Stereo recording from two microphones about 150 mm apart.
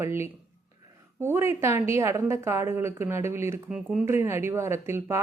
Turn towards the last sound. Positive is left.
turn(degrees=-15)  # may be behind; listen again after turning